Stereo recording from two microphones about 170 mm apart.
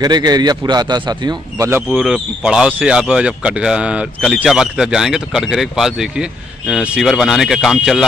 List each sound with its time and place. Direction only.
0.0 s a man's voice: 25° right (ahead or behind); by 8.0 s centre (ahead or behind)